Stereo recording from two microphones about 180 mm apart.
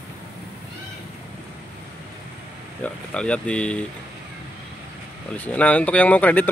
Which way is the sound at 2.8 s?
5° left (ahead or behind).